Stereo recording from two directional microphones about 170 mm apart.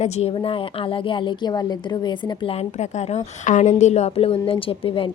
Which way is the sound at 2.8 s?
40° left (ahead or behind).